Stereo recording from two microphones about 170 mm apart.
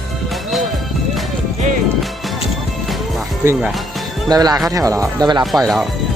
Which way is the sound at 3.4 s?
15° right (ahead or behind).